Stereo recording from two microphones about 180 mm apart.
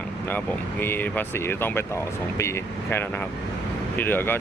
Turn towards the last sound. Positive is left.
turn(degrees=10)  # may be behind; listen again after turning